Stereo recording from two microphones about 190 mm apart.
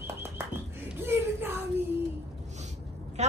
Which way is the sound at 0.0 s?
10° right (ahead or behind).